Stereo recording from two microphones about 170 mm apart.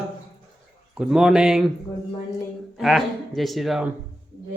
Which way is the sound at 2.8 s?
Centre (ahead or behind).